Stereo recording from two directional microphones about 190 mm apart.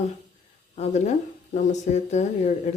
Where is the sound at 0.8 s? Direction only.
35° left (ahead or behind).